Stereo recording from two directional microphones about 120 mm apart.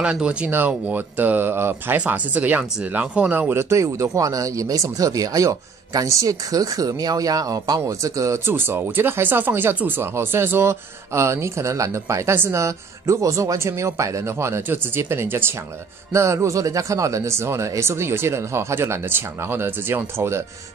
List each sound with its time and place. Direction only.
0.0 s speech: 10° right (ahead or behind)